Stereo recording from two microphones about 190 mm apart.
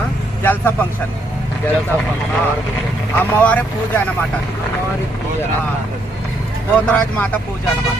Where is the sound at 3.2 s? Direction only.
10° left (ahead or behind).